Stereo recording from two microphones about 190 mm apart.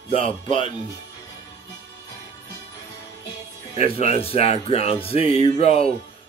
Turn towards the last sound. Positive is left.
turn(degrees=30)  # may be behind; listen again after turning